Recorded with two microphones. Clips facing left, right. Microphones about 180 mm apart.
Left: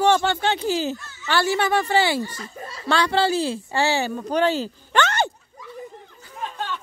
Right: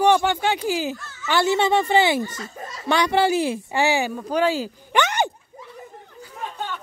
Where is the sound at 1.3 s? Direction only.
20° right (ahead or behind).